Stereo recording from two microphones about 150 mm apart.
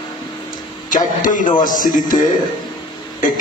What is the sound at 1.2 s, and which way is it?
Speech, 60° left (ahead or behind).